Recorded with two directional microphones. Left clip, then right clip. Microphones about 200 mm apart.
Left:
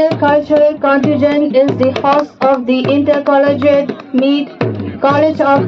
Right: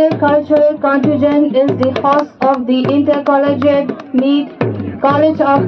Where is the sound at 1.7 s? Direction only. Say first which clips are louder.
Left 1 dB; 10° left (ahead or behind).